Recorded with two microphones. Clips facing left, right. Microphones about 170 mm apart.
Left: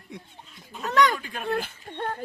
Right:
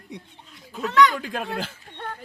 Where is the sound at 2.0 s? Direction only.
40° left (ahead or behind).